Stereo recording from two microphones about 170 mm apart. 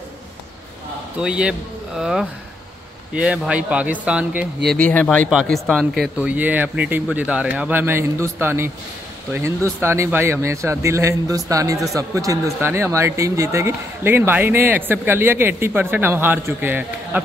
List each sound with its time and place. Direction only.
1.1 s speech: 5° right (ahead or behind)
4.6 s speech: 10° left (ahead or behind); by 8.7 s 15° right (ahead or behind)
9.8 s speech: 15° right (ahead or behind)